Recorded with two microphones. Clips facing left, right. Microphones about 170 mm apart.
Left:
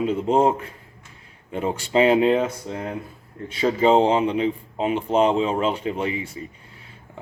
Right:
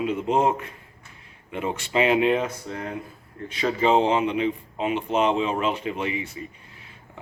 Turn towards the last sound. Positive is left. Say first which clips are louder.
# left 2 dB
turn(degrees=30)  # may be behind; listen again after turning